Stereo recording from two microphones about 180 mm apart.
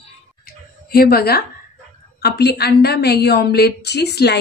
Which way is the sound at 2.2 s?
60° left (ahead or behind).